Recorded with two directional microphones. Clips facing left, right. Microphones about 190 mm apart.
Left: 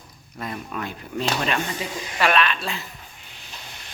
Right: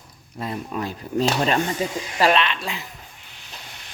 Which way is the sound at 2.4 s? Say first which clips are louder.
Left 1 dB; 20° right (ahead or behind).